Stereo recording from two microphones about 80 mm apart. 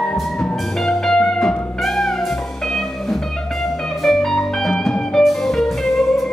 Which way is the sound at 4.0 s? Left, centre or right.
Centre.